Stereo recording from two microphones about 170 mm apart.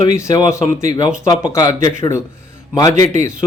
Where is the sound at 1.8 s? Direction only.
20° left (ahead or behind).